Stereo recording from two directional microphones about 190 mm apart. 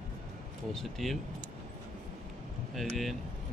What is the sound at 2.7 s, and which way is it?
Speech, centre (ahead or behind).